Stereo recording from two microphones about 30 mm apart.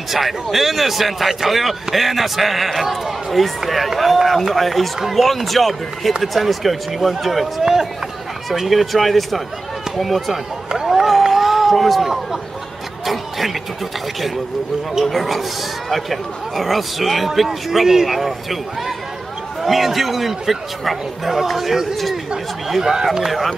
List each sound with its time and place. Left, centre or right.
0.1 s a man's voice: centre
7.6 s speech: centre
8.5 s a man's voice: centre
10.9 s a sound: centre
15.0 s a man's voice: centre
22.8 s speech: centre